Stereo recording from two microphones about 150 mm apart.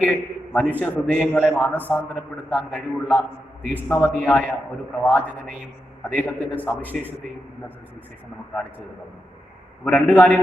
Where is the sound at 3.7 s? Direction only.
15° left (ahead or behind).